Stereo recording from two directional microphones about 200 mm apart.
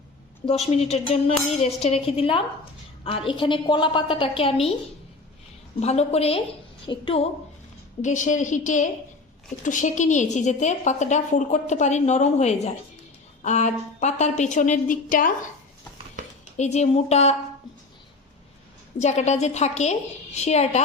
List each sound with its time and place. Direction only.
0.4 s a woman's voice: 30° left (ahead or behind)
5.8 s a woman's voice: 30° left (ahead or behind)
8.0 s a woman's voice: 40° left (ahead or behind)
16.6 s a woman's voice: 35° left (ahead or behind)
18.9 s a woman's voice: 35° left (ahead or behind)